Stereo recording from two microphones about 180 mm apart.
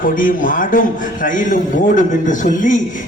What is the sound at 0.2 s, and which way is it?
A man's voice, 50° left (ahead or behind).